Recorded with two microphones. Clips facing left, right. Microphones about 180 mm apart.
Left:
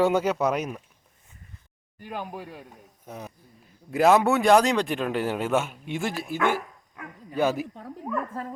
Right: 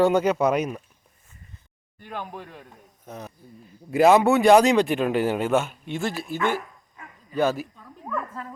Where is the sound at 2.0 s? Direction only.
10° left (ahead or behind).